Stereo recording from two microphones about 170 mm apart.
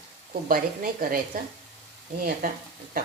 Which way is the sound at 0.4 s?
55° right (ahead or behind).